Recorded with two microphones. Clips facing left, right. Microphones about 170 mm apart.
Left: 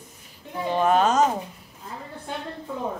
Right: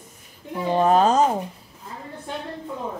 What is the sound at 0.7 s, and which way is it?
Speech, 35° right (ahead or behind).